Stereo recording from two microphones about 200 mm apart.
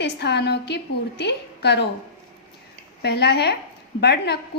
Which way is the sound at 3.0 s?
55° left (ahead or behind).